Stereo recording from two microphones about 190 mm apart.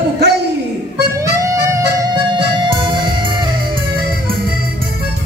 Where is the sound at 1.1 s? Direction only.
15° right (ahead or behind).